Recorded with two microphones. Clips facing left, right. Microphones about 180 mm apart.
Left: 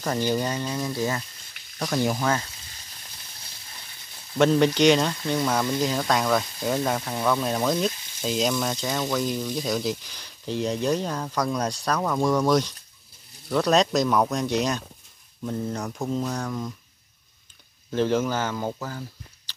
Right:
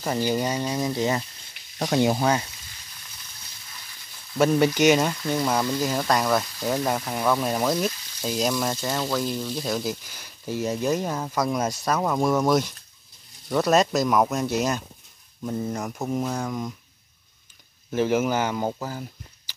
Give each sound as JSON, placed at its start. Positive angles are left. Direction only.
{"t": 0.0, "sound": "speech", "side_deg": -10}
{"t": 4.4, "sound": "speech", "side_deg": -10}
{"t": 16.0, "sound": "speech", "side_deg": -20}
{"t": 17.9, "sound": "speech", "side_deg": -10}